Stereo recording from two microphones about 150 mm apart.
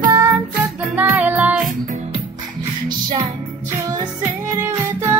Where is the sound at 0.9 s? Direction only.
10° right (ahead or behind).